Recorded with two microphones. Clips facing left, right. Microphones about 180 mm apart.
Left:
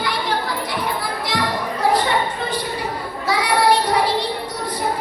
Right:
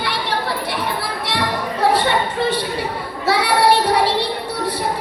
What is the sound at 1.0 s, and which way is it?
Children playing, 65° right (ahead or behind).